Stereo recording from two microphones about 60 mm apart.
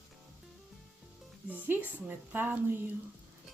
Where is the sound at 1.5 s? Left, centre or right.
Right.